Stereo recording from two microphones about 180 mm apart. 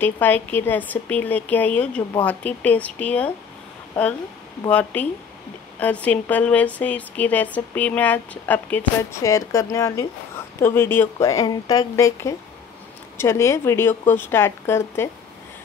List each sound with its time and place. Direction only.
0.0 s a woman's voice: 10° left (ahead or behind)
4.6 s a woman's voice: 10° left (ahead or behind)